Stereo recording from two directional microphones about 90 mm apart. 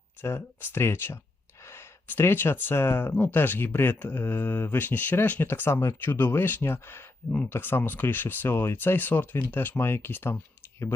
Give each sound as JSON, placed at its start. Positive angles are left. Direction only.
{"t": 0.2, "sound": "speech", "side_deg": 25}